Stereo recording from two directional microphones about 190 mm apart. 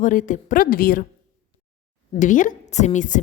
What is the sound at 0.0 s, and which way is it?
A woman's voice, 45° left (ahead or behind).